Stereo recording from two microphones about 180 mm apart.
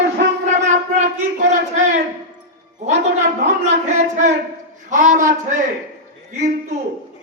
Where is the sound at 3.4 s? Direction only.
40° right (ahead or behind).